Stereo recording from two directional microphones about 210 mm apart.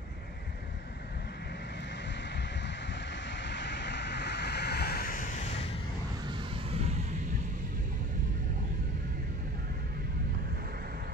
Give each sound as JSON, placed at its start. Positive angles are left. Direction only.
{"t": 2.3, "sound": "vehicle", "side_deg": 55}